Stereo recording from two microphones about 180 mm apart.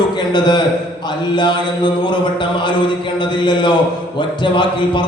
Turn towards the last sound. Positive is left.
turn(degrees=25)  # may be behind; listen again after turning